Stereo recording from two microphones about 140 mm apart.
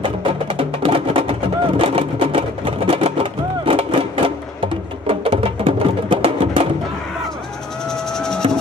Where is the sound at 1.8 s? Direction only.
40° right (ahead or behind).